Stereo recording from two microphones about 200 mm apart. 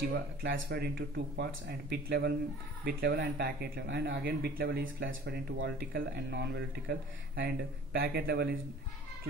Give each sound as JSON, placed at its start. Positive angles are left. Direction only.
{"t": 0.1, "sound": "speech", "side_deg": -55}